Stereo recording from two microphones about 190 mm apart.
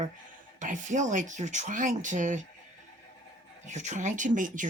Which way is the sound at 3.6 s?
40° right (ahead or behind).